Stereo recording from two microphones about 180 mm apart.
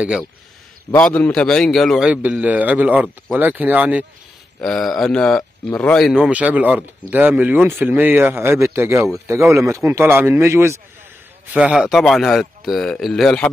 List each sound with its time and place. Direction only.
0.9 s speech: 10° left (ahead or behind); by 4.0 s 10° right (ahead or behind)
4.6 s speech: centre (ahead or behind); by 10.8 s 15° right (ahead or behind)
11.5 s speech: 5° right (ahead or behind)